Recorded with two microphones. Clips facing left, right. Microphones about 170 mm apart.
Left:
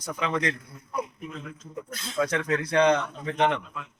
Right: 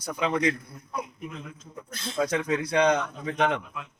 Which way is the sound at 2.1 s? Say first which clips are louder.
Even; 15° right (ahead or behind).